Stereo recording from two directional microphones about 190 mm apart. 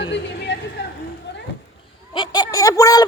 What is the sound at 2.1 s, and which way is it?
Speech, 25° left (ahead or behind).